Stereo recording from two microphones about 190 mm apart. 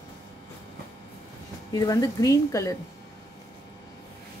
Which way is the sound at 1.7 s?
20° left (ahead or behind).